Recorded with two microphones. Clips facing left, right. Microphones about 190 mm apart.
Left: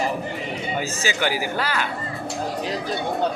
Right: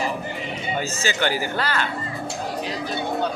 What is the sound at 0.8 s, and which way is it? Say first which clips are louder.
Speech: right 1 dB; 10° left (ahead or behind).